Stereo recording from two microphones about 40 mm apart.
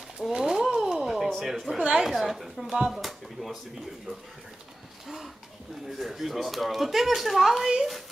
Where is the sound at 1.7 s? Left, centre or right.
Centre.